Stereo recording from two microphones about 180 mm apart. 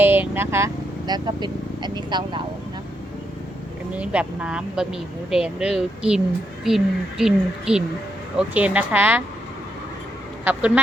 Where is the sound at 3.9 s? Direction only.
5° right (ahead or behind).